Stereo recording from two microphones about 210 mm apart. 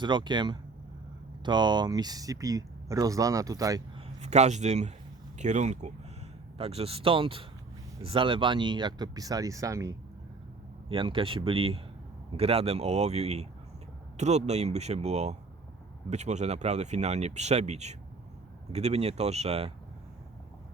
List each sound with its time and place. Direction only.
0.0 s speech: 20° right (ahead or behind)
4.2 s speech: 35° right (ahead or behind)